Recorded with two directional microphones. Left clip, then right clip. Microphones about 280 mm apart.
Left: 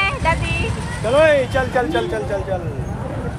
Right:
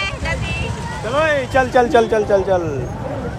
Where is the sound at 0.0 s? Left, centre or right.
Centre.